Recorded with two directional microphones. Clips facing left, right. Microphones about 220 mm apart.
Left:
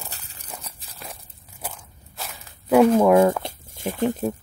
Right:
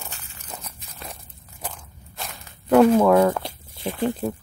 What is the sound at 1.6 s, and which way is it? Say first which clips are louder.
Biting: right 1 dB; 10° left (ahead or behind).